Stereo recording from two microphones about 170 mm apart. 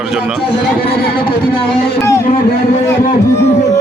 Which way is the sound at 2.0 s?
15° left (ahead or behind).